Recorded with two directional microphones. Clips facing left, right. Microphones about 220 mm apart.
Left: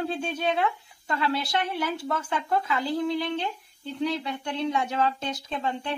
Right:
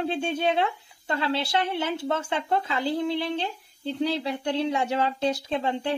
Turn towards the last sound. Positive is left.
turn(degrees=-30)  # may be behind; listen again after turning